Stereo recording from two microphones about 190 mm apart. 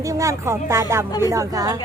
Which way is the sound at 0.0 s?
15° right (ahead or behind).